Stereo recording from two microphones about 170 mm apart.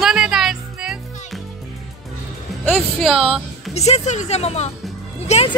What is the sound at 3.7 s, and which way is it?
Speech, 40° left (ahead or behind).